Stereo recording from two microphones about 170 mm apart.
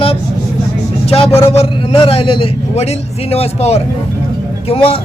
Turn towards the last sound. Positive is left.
turn(degrees=35)  # may be behind; listen again after turning